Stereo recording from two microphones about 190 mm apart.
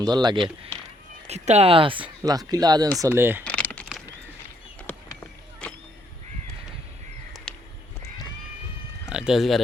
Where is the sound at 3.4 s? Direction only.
5° left (ahead or behind).